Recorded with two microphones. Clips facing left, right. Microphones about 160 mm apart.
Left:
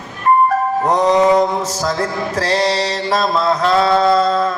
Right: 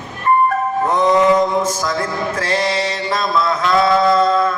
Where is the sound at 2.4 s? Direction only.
35° left (ahead or behind).